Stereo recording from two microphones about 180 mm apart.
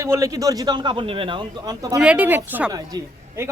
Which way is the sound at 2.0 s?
5° right (ahead or behind).